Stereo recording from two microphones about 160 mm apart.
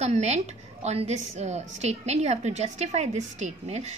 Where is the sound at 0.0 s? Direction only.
45° right (ahead or behind).